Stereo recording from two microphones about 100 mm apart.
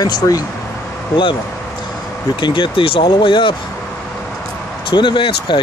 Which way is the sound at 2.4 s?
50° left (ahead or behind).